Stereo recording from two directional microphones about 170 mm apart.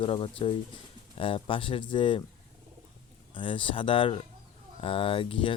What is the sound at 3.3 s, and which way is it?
Speech, 30° left (ahead or behind).